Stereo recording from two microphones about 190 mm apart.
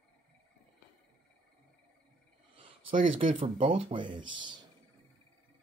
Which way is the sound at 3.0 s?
45° right (ahead or behind).